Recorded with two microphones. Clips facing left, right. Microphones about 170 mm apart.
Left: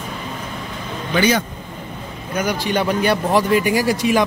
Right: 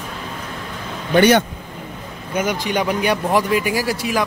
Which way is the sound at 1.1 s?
65° right (ahead or behind).